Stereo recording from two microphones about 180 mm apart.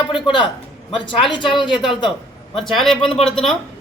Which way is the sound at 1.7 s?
Centre (ahead or behind).